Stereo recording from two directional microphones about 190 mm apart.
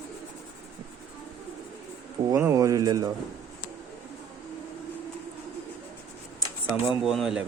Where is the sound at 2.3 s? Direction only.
15° right (ahead or behind).